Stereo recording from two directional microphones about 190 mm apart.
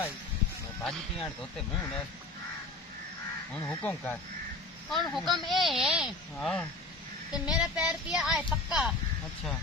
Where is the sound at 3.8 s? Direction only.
10° left (ahead or behind).